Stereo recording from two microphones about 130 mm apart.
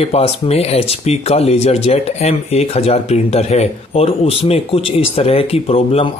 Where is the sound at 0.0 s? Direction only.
50° left (ahead or behind).